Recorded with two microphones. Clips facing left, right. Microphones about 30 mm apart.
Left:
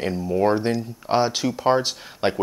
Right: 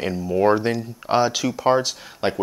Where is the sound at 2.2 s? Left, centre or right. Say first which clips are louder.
Left 1 dB; centre.